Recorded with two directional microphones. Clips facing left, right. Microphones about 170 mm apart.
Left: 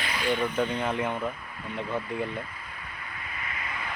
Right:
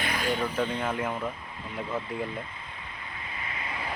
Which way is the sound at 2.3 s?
25° right (ahead or behind).